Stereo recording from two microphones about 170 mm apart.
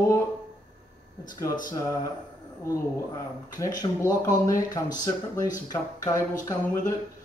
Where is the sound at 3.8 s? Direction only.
20° left (ahead or behind).